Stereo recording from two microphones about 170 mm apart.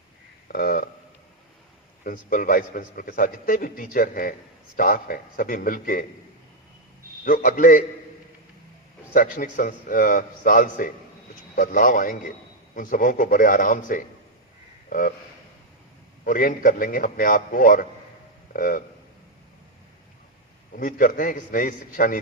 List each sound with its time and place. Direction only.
0.4 s a sound: 55° left (ahead or behind)
2.0 s a man's voice: 50° left (ahead or behind)
7.3 s a man's voice: 50° left (ahead or behind)
9.1 s a man's voice: 50° left (ahead or behind)
16.2 s a man's voice: 50° left (ahead or behind)
20.7 s a man's voice: 50° left (ahead or behind)